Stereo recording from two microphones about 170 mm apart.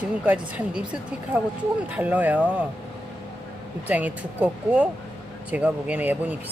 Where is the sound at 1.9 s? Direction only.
10° right (ahead or behind).